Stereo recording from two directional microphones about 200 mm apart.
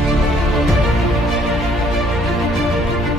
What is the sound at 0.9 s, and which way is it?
Music, centre (ahead or behind).